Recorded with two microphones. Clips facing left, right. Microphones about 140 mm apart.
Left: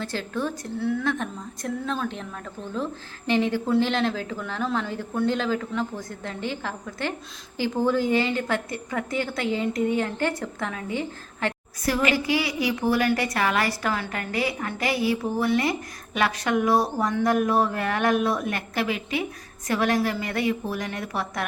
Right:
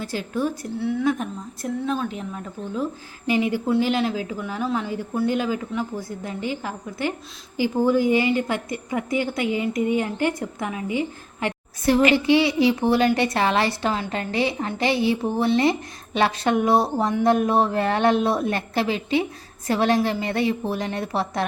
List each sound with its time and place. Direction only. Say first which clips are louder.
0.0 s a woman's voice: right 3 dB; 10° right (ahead or behind)
12.1 s a woman's voice: right 7 dB; 25° right (ahead or behind)